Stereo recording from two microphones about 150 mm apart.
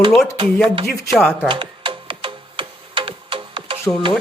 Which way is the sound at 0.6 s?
35° right (ahead or behind).